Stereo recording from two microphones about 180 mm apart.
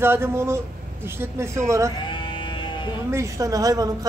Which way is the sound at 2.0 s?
25° left (ahead or behind).